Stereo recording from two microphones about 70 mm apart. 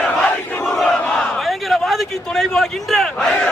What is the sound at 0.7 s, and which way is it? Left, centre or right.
Crowd, centre.